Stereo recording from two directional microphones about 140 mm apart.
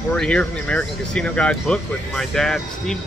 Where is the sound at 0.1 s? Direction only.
10° left (ahead or behind).